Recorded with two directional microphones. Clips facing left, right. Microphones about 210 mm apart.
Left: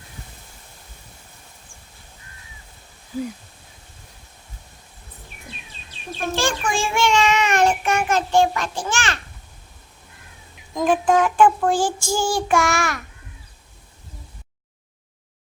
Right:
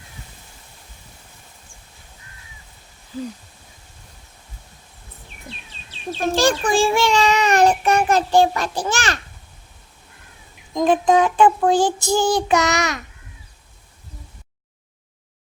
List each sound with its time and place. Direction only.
6.3 s a child's voice: 40° right (ahead or behind)
10.8 s child singing: 20° right (ahead or behind)